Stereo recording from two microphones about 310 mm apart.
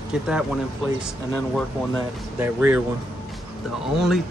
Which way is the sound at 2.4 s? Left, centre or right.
Centre.